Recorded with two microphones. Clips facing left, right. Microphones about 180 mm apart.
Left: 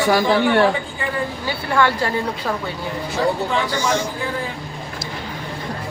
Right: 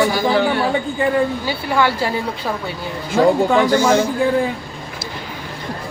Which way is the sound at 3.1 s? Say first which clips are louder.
Right 8 dB; 45° right (ahead or behind).